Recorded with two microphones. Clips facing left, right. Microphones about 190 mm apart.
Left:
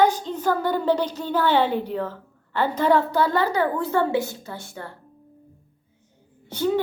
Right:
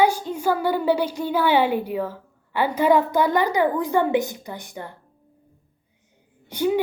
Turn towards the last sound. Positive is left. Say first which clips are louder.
# right 1 dB
turn(degrees=-15)  # may be behind; listen again after turning